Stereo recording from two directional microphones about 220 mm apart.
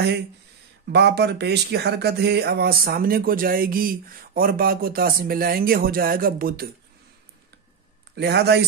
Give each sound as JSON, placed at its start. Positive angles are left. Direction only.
{"t": 0.8, "sound": "speech", "side_deg": -50}
{"t": 8.2, "sound": "speech", "side_deg": -50}